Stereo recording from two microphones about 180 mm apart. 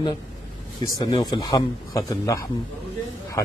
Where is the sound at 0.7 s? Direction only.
20° left (ahead or behind).